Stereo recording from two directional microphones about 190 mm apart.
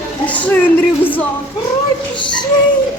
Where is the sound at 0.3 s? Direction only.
10° left (ahead or behind).